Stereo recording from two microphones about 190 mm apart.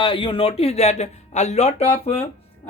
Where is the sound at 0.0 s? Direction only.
25° left (ahead or behind).